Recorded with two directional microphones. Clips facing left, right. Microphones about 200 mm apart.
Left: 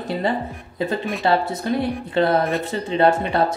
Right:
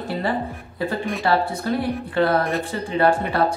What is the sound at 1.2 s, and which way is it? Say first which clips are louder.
Speech: left 1 dB; 20° left (ahead or behind).